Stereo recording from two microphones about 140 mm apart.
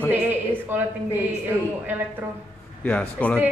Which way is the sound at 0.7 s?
15° right (ahead or behind).